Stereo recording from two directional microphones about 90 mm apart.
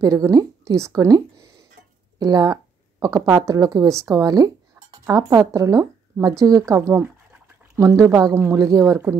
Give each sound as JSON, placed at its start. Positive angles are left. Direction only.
{"t": 0.0, "sound": "a woman's voice", "side_deg": -45}
{"t": 6.8, "sound": "speech", "side_deg": -25}
{"t": 7.7, "sound": "speech", "side_deg": -35}
{"t": 8.4, "sound": "speech", "side_deg": -35}